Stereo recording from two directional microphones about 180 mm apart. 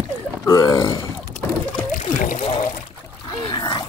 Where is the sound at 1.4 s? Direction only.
10° left (ahead or behind).